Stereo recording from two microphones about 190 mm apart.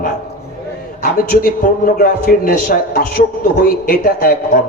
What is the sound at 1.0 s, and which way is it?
A man's voice, 50° left (ahead or behind).